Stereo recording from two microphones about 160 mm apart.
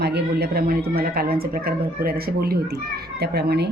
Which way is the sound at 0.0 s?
90° right.